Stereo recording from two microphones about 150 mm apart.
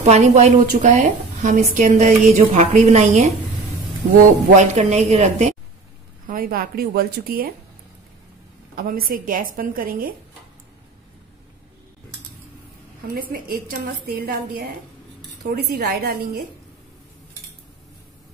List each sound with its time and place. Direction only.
0.0 s a woman's voice: 50° right (ahead or behind)
4.6 s a woman's voice: 50° right (ahead or behind)
6.2 s a woman's voice: 70° right (ahead or behind)
8.7 s a woman's voice: 70° right (ahead or behind)
13.1 s a woman's voice: 85° right